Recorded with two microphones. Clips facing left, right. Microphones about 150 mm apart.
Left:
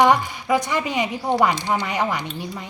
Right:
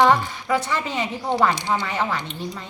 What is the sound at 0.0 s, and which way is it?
A woman's voice, 15° left (ahead or behind).